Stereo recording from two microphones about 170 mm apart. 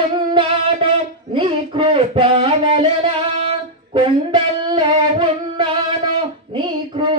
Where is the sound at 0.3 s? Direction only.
30° right (ahead or behind).